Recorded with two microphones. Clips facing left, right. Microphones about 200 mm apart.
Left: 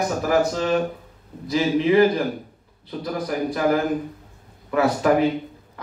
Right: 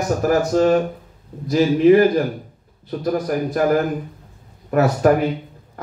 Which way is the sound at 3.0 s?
45° right (ahead or behind).